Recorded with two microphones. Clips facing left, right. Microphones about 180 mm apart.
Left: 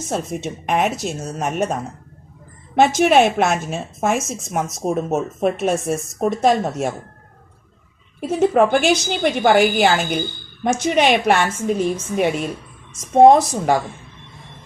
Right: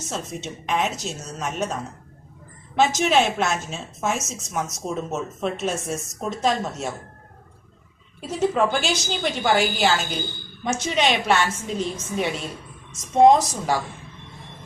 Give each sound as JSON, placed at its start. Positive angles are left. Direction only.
{"t": 0.1, "sound": "a woman's voice", "side_deg": 55}
{"t": 8.3, "sound": "a woman's voice", "side_deg": 55}